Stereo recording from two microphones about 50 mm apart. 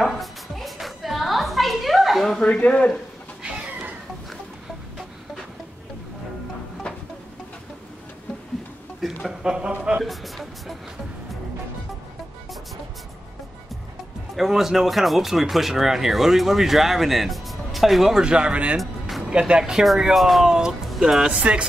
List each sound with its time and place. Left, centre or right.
0.0 s music: centre
2.4 s a man's voice: left
9.4 s speech: centre
10.0 s speech: centre
14.3 s speech: centre; by 18.8 s right
18.8 s music: centre
19.3 s speech: centre
21.3 s speech: right